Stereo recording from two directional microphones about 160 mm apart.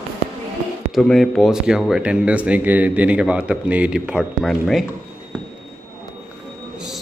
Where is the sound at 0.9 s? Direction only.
Centre (ahead or behind).